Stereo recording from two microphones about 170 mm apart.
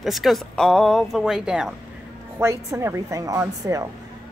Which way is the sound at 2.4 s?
15° right (ahead or behind).